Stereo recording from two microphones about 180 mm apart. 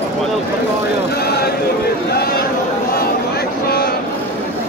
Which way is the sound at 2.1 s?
60° left (ahead or behind).